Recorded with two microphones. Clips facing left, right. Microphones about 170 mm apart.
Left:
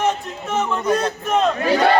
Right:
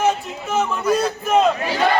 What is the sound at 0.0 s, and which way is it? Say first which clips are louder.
A man's voice: right 1 dB; 5° right (ahead or behind).